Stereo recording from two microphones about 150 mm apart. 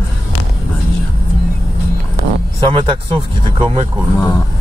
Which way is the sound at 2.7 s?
35° right (ahead or behind).